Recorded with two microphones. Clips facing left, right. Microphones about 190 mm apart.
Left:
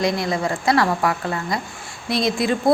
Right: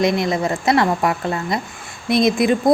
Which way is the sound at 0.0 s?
20° right (ahead or behind).